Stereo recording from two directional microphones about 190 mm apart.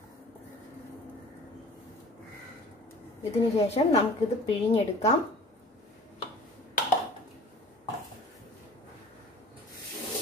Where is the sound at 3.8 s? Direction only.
30° left (ahead or behind).